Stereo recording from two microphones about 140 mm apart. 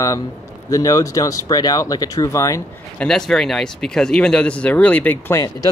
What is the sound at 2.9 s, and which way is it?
Speech, 5° left (ahead or behind).